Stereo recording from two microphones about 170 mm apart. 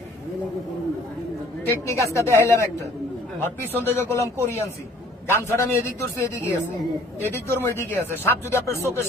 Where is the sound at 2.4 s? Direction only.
15° left (ahead or behind).